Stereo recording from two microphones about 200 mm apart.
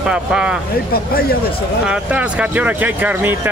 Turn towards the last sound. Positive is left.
turn(degrees=-10)  # may be behind; listen again after turning